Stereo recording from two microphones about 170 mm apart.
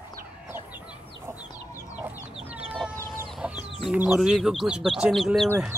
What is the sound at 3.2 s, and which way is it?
Chicken, 5° right (ahead or behind).